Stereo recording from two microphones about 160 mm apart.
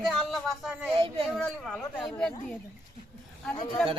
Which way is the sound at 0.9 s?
35° right (ahead or behind).